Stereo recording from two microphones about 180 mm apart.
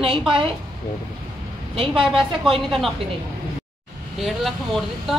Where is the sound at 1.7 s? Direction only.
30° right (ahead or behind).